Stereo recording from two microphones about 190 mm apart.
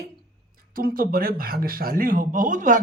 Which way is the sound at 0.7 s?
50° right (ahead or behind).